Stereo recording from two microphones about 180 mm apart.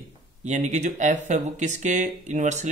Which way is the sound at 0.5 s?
40° right (ahead or behind).